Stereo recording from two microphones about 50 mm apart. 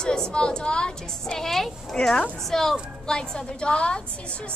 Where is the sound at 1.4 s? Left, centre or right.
Centre.